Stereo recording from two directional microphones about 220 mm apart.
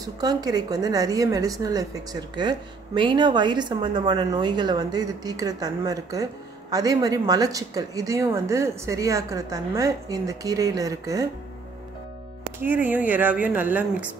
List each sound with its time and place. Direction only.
0.0 s a woman's voice: 15° right (ahead or behind)
12.5 s a woman's voice: 10° right (ahead or behind)